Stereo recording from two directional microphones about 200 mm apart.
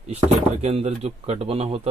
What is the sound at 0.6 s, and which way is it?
Speech, 30° right (ahead or behind).